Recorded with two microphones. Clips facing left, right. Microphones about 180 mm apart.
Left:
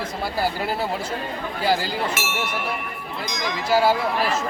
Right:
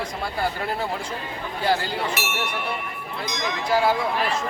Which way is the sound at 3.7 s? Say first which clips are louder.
Left 2 dB; 5° left (ahead or behind).